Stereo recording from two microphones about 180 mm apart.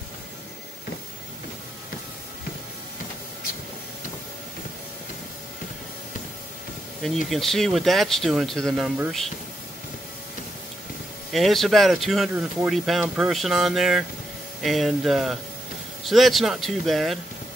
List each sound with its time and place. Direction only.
7.0 s speech: centre (ahead or behind)
11.3 s speech: centre (ahead or behind)